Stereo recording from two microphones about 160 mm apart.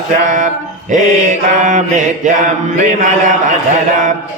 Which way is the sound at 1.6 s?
50° right (ahead or behind).